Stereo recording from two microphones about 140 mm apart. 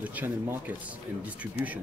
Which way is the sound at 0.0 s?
10° right (ahead or behind).